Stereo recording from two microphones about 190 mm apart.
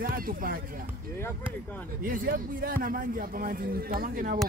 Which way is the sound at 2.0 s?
50° right (ahead or behind).